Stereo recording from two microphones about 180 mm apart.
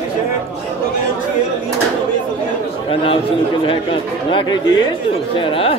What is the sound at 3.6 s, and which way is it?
Speech, 30° left (ahead or behind).